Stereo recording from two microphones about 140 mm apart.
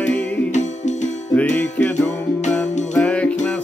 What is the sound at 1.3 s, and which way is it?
Music, 10° left (ahead or behind).